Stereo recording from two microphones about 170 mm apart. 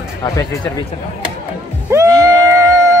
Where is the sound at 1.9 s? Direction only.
20° right (ahead or behind).